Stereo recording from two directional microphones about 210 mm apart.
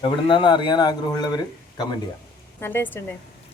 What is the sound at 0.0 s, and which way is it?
A man's voice, 25° left (ahead or behind).